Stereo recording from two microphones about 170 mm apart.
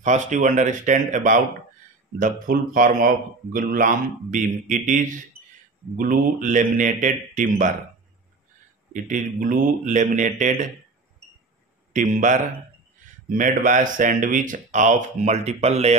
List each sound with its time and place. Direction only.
0.0 s speech: 45° right (ahead or behind)
8.9 s speech: 50° right (ahead or behind)
11.9 s speech: 50° right (ahead or behind)